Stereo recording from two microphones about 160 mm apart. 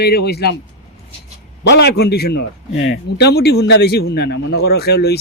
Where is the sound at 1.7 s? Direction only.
90° left.